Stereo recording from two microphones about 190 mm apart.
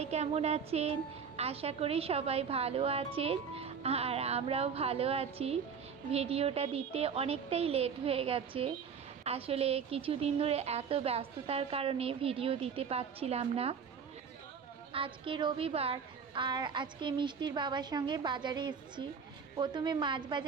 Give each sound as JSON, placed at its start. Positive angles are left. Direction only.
{"t": 0.0, "sound": "a woman's voice", "side_deg": -35}
{"t": 14.9, "sound": "a woman's voice", "side_deg": -25}